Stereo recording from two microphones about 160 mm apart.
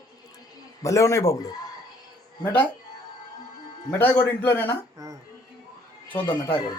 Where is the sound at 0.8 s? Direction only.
20° left (ahead or behind).